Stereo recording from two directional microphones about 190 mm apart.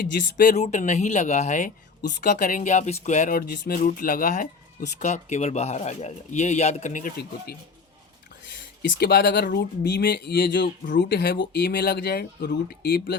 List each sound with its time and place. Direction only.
0.3 s speech: 40° left (ahead or behind)
8.8 s speech: 60° left (ahead or behind)